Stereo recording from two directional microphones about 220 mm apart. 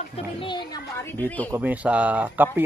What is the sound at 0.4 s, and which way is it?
Speech, 20° left (ahead or behind).